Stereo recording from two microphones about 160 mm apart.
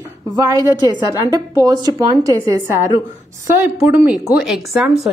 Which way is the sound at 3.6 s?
10° right (ahead or behind).